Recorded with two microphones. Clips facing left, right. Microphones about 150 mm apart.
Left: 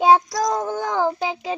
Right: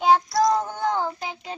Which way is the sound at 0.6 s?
90° left.